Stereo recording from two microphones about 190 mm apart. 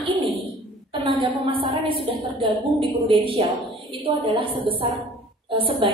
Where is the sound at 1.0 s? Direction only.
25° right (ahead or behind).